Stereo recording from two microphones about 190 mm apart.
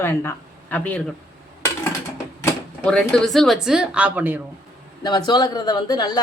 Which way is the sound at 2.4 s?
10° left (ahead or behind).